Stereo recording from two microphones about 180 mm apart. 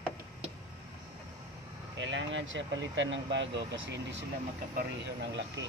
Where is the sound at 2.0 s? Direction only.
90° right.